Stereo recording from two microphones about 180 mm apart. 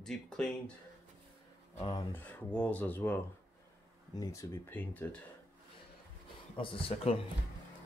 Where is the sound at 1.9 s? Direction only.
10° left (ahead or behind).